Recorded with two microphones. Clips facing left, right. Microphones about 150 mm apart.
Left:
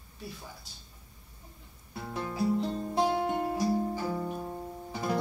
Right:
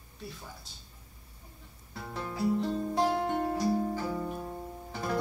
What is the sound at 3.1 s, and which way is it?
Music, 10° left (ahead or behind).